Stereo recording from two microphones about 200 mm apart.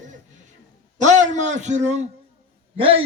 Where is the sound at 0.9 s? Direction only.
35° right (ahead or behind).